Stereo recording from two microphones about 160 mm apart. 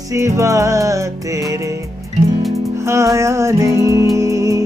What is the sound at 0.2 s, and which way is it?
Music, 20° right (ahead or behind).